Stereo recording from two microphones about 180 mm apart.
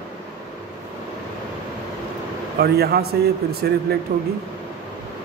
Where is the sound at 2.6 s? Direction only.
60° right (ahead or behind).